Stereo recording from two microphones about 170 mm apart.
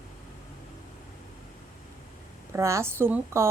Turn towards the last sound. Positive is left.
turn(degrees=-15)  # may be behind; listen again after turning